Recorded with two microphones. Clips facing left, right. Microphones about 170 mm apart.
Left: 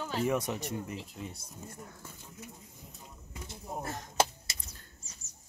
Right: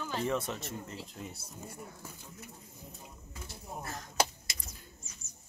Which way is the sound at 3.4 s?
20° left (ahead or behind).